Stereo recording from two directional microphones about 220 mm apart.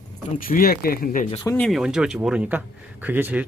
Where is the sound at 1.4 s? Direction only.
5° left (ahead or behind).